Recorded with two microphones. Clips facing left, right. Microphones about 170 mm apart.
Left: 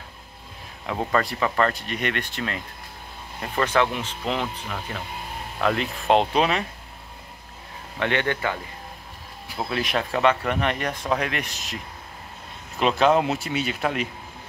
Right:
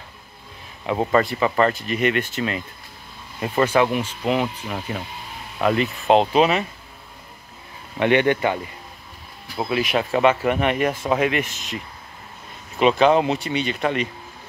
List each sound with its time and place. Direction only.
1.1 s speech: 5° right (ahead or behind)
8.0 s speech: 15° right (ahead or behind)
9.6 s speech: 5° right (ahead or behind)